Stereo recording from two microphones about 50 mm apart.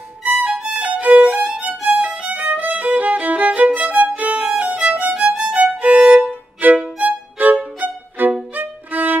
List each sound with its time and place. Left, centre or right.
0.2 s music: right
1.3 s violin: right
4.7 s music: right
5.8 s violin: right
6.6 s violin: right
7.0 s music: right
8.5 s violin: right